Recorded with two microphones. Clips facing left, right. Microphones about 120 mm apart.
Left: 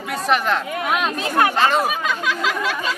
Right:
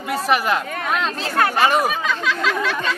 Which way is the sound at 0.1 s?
5° right (ahead or behind).